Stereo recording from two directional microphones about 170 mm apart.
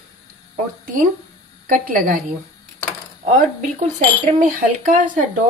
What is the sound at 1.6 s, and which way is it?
Speech, 55° right (ahead or behind).